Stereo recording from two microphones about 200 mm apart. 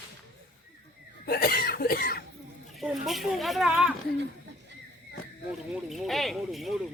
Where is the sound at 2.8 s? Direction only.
Centre (ahead or behind).